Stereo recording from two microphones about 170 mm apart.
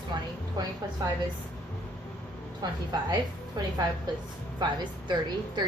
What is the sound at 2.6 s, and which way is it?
A woman's voice, 25° right (ahead or behind).